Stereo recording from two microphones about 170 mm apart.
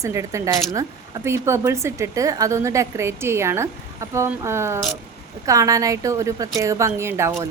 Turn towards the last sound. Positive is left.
turn(degrees=-15)  # may be behind; listen again after turning